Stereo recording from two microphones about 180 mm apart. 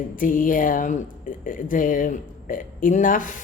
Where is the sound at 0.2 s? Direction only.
50° left (ahead or behind).